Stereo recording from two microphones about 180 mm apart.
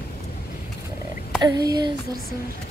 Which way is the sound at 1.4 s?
20° right (ahead or behind).